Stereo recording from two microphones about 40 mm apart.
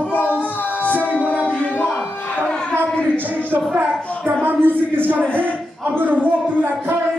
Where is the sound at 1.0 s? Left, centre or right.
Left.